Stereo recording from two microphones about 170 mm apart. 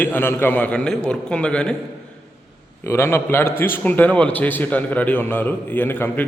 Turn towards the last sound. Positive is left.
turn(degrees=10)  # may be behind; listen again after turning